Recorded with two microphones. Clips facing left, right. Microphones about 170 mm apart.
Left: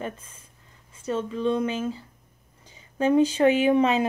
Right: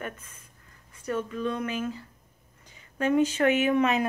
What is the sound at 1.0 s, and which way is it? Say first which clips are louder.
Speech: left 4 dB; 25° left (ahead or behind).